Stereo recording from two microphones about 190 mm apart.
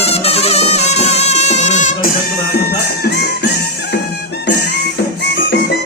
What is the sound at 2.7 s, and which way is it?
Music, 55° left (ahead or behind).